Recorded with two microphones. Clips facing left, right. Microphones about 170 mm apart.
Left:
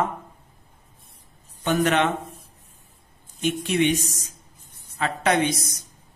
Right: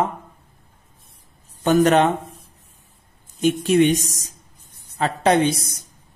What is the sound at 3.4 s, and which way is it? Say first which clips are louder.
A woman's voice: right 6 dB; 40° right (ahead or behind).